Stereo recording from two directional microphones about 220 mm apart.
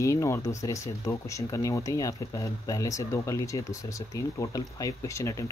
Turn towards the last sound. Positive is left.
turn(degrees=15)  # may be behind; listen again after turning